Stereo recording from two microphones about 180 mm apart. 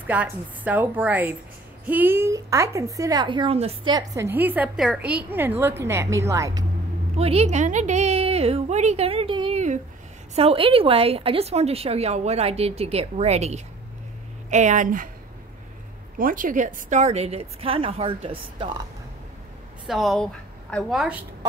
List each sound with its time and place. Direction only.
0.0 s a woman's voice: 10° right (ahead or behind); by 3.9 s 35° right (ahead or behind)
3.9 s a woman's voice: 15° right (ahead or behind)
7.2 s a woman's voice: 35° right (ahead or behind)
16.2 s a woman's voice: 50° right (ahead or behind); by 18.8 s 30° right (ahead or behind)
19.9 s a woman's voice: centre (ahead or behind)